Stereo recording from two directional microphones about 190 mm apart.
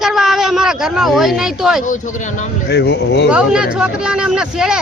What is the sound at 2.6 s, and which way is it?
Speech, 65° left (ahead or behind).